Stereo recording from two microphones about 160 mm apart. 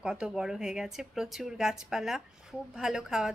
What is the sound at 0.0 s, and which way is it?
Speech, 5° right (ahead or behind).